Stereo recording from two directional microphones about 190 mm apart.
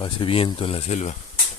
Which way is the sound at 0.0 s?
25° left (ahead or behind).